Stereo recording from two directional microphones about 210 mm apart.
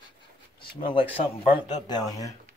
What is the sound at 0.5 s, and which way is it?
Speech, 25° left (ahead or behind).